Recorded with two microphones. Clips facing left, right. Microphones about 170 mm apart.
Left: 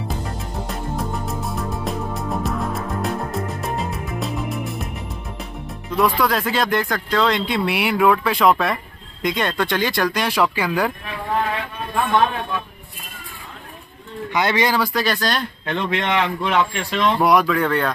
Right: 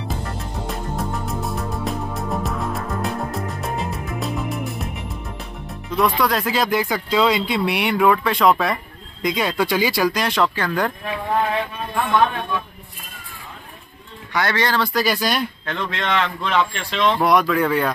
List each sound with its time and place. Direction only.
0.7 s music: centre (ahead or behind)
5.9 s speech: centre (ahead or behind)
14.3 s a man's voice: 15° left (ahead or behind)
15.0 s speech: 5° right (ahead or behind)
15.6 s a man's voice: 20° left (ahead or behind); by 17.9 s 5° right (ahead or behind)